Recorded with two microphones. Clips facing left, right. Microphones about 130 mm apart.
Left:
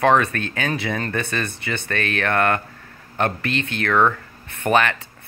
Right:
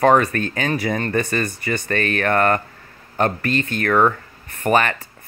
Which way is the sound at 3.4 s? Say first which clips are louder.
Right 3 dB; 75° left (ahead or behind).